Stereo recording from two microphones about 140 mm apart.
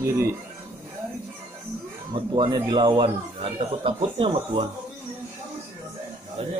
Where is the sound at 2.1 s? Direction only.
35° right (ahead or behind).